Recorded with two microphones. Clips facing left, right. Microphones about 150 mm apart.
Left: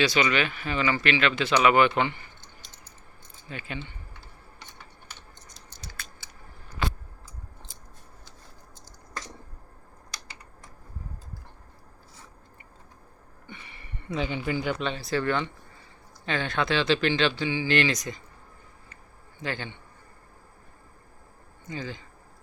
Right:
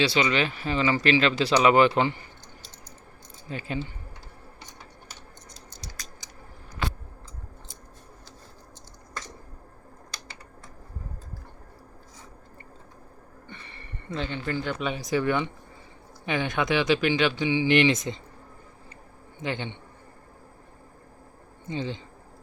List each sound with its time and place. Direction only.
0.0 s speech: 30° right (ahead or behind)
3.5 s speech: 35° right (ahead or behind)
5.8 s a sound: 40° right (ahead or behind)
13.5 s a sound: 10° left (ahead or behind)
14.8 s speech: 10° right (ahead or behind)
19.4 s a man's voice: 20° right (ahead or behind)
21.7 s a man's voice: 25° right (ahead or behind)